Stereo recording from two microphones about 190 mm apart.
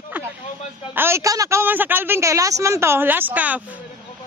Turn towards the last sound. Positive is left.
turn(degrees=-10)  # may be behind; listen again after turning